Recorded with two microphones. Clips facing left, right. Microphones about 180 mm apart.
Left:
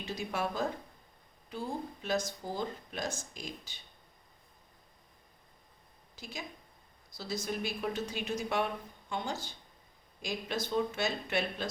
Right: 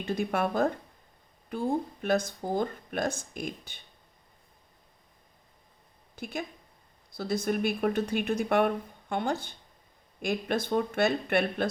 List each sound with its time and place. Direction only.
0.0 s speech: 55° right (ahead or behind)
6.1 s a woman's voice: 55° right (ahead or behind)